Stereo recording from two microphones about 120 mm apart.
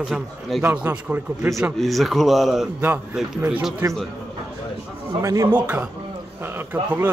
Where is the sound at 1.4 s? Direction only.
25° right (ahead or behind).